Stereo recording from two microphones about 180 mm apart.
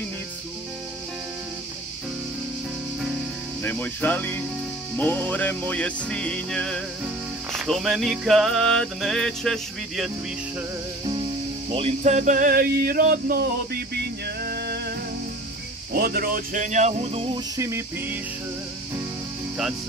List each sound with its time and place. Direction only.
3.6 s music: 10° left (ahead or behind)
11.7 s a sound: 35° right (ahead or behind); by 15.0 s 65° right (ahead or behind)
15.9 s speech: 55° right (ahead or behind); by 17.4 s 35° right (ahead or behind)
17.6 s music: 15° right (ahead or behind)